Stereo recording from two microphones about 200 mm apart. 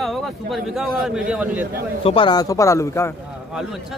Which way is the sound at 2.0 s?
25° left (ahead or behind).